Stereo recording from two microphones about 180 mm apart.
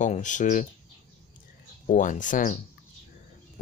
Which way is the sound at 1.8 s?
45° left (ahead or behind).